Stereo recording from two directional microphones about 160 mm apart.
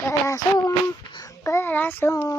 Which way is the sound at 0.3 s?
25° left (ahead or behind).